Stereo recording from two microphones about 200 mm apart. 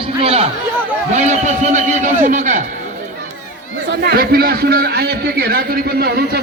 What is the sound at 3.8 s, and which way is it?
A man's voice, 55° right (ahead or behind).